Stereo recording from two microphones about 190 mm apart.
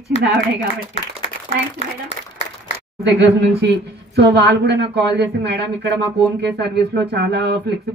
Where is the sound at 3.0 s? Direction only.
65° right (ahead or behind).